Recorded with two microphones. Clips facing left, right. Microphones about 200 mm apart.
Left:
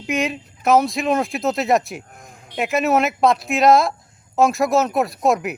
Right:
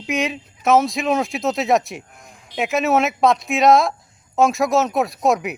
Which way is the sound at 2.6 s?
Centre (ahead or behind).